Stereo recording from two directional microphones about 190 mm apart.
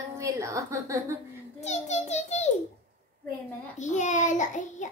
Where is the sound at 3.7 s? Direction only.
40° left (ahead or behind).